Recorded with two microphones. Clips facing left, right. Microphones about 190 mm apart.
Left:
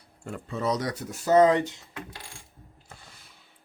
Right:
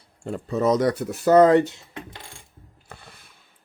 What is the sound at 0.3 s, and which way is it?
Speech, 30° right (ahead or behind).